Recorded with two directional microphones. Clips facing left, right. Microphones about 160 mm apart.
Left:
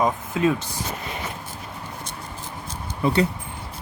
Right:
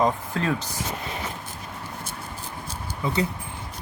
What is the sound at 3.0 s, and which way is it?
Speech, 70° left (ahead or behind).